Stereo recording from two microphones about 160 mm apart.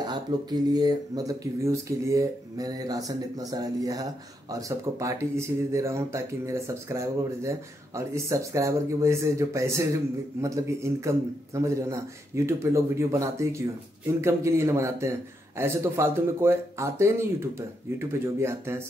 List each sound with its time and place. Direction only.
0.0 s a man's voice: 25° right (ahead or behind)